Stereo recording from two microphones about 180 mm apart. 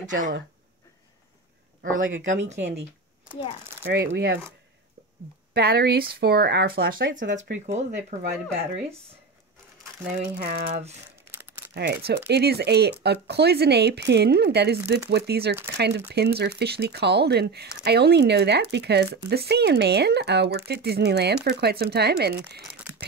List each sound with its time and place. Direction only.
0.0 s speech: 45° right (ahead or behind)
1.8 s speech: 90° right
3.8 s speech: 80° right
5.5 s speech: 60° right (ahead or behind)
7.7 s speech: 40° right (ahead or behind)
10.4 s speech: 35° right (ahead or behind)
11.7 s speech: 65° right (ahead or behind)
22.8 s a sound: 10° right (ahead or behind)